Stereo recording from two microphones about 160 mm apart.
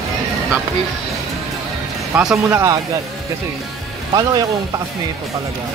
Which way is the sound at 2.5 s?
15° right (ahead or behind).